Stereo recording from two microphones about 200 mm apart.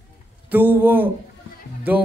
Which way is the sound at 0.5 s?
10° right (ahead or behind).